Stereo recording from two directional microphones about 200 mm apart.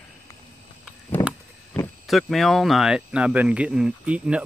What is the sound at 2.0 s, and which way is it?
Speech, centre (ahead or behind).